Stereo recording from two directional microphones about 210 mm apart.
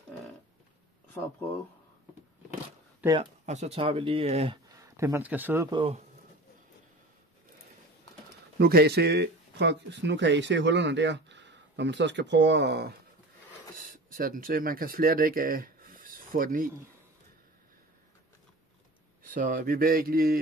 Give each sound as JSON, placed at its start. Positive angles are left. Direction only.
{"t": 3.1, "sound": "speech", "side_deg": -30}
{"t": 5.7, "sound": "speech", "side_deg": -25}
{"t": 8.5, "sound": "speech", "side_deg": -50}
{"t": 14.1, "sound": "speech", "side_deg": -40}
{"t": 19.3, "sound": "speech", "side_deg": -40}